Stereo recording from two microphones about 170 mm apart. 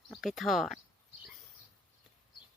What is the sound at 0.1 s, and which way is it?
Speech, centre (ahead or behind).